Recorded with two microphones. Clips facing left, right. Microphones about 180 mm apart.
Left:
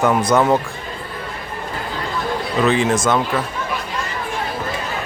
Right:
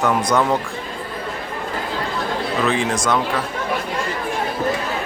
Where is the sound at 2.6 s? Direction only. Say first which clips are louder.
Left 5 dB; centre (ahead or behind).